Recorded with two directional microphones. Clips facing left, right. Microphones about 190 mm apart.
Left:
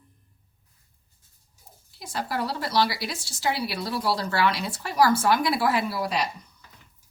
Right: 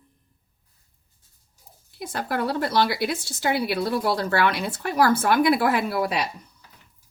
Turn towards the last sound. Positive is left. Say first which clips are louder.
# right 3 dB
turn(degrees=-55)  # may be behind; listen again after turning